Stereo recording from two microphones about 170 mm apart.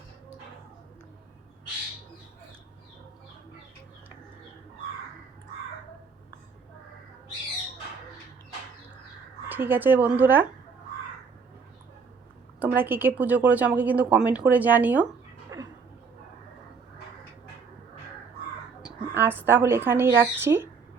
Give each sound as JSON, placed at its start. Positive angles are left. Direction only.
{"t": 9.5, "sound": "a woman's voice", "side_deg": -10}
{"t": 12.5, "sound": "a woman's voice", "side_deg": -10}
{"t": 15.5, "sound": "a sound", "side_deg": -20}
{"t": 19.1, "sound": "a woman's voice", "side_deg": -10}